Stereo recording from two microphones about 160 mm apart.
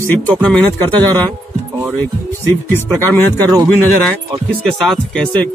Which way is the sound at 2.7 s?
15° left (ahead or behind).